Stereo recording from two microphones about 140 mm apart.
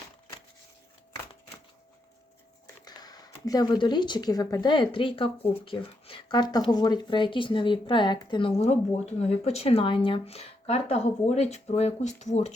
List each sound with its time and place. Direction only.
2.8 s speech: 30° left (ahead or behind); by 12.5 s 55° left (ahead or behind)